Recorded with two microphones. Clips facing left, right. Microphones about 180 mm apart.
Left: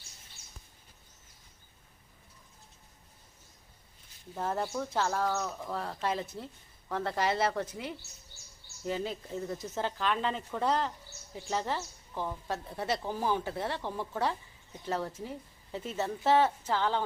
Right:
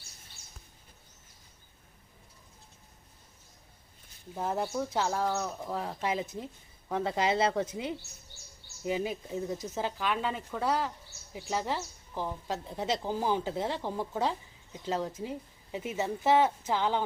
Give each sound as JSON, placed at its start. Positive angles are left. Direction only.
{"t": 4.4, "sound": "speech", "side_deg": -15}